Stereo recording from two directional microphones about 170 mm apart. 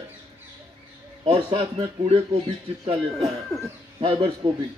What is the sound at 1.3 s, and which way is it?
Speech, 25° right (ahead or behind).